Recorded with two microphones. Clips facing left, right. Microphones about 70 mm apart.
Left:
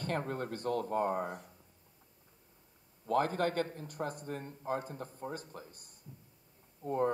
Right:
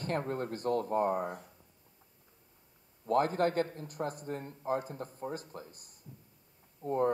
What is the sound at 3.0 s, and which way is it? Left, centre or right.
Speech, right.